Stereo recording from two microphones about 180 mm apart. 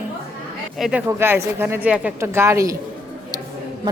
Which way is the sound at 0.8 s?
5° right (ahead or behind).